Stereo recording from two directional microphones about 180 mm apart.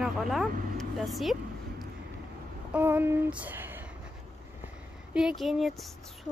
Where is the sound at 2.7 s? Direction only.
10° right (ahead or behind).